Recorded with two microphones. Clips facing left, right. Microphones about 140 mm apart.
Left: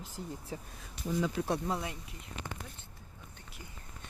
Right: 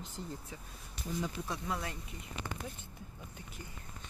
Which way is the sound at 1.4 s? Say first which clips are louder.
Left 8 dB; 90° left.